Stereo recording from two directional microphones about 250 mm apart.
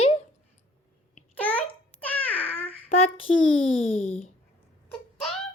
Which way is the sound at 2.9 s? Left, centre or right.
Left.